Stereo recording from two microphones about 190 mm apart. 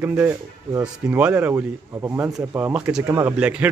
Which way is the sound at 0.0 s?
10° right (ahead or behind).